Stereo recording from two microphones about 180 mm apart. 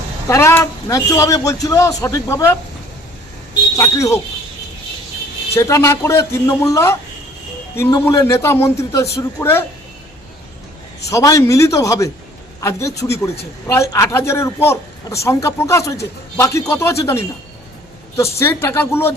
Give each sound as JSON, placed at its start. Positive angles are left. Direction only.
{"t": 0.3, "sound": "a man's voice", "side_deg": 15}
{"t": 3.8, "sound": "a man's voice", "side_deg": 15}
{"t": 5.5, "sound": "a man's voice", "side_deg": 15}
{"t": 11.1, "sound": "a man's voice", "side_deg": 20}
{"t": 18.3, "sound": "a man's voice", "side_deg": 15}